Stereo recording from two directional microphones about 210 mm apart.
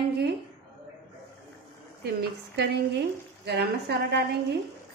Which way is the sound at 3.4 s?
50° right (ahead or behind).